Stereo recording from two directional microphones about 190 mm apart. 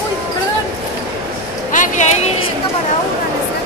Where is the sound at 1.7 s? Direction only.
40° left (ahead or behind).